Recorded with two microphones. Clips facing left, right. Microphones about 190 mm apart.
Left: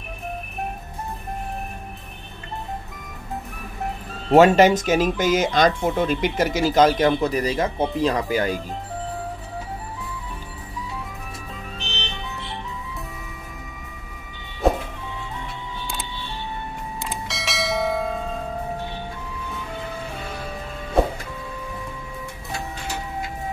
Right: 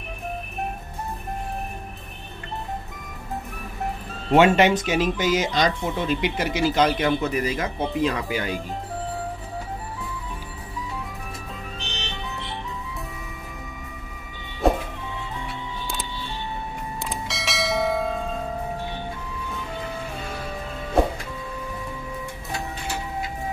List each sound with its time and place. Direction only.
4.3 s speech: 40° left (ahead or behind)
14.6 s music: centre (ahead or behind)
17.0 s bell: centre (ahead or behind)